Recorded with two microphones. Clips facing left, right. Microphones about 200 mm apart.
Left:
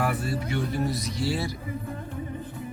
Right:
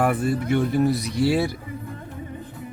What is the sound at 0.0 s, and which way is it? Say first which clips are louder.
Speech: right 6 dB; 50° right (ahead or behind).